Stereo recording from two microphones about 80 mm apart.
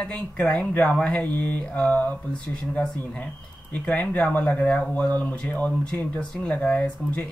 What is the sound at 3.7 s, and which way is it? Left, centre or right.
Speech, centre.